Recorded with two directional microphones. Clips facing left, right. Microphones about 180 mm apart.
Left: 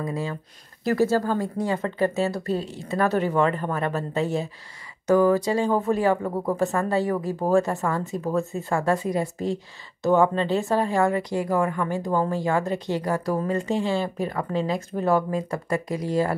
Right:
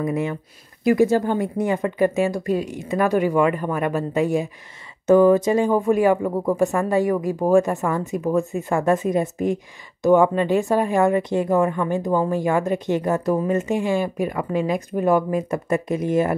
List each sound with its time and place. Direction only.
0.0 s speech: 20° right (ahead or behind)